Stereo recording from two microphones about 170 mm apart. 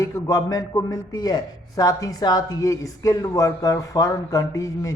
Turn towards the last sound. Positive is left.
turn(degrees=20)  # may be behind; listen again after turning